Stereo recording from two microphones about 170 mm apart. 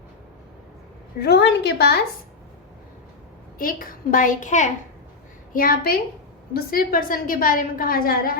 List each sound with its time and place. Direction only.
1.2 s a woman's voice: 80° left
3.6 s a woman's voice: 55° left (ahead or behind)
5.5 s a woman's voice: 60° left (ahead or behind)